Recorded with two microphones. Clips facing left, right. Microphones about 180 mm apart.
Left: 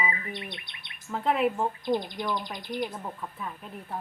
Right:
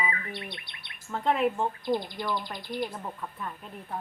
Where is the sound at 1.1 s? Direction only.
5° left (ahead or behind).